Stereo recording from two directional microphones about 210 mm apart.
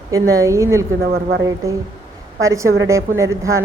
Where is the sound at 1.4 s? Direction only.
15° right (ahead or behind).